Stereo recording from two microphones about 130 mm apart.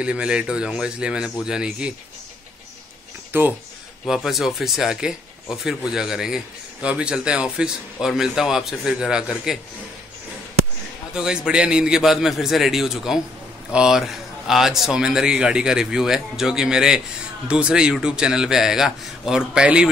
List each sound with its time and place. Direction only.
0.0 s a man's voice: 10° right (ahead or behind)
3.3 s a man's voice: 15° right (ahead or behind)
4.0 s speech: centre (ahead or behind)
11.1 s speech: 5° right (ahead or behind)